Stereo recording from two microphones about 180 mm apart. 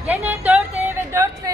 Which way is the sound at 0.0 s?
10° right (ahead or behind).